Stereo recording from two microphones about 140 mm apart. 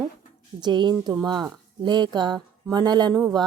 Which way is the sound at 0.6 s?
30° right (ahead or behind).